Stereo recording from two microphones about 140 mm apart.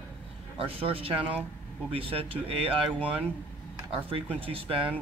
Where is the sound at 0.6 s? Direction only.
40° right (ahead or behind).